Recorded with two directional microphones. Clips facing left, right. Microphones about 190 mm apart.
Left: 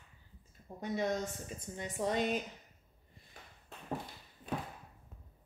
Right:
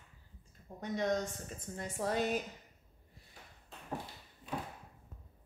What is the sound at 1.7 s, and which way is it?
Speech, centre (ahead or behind).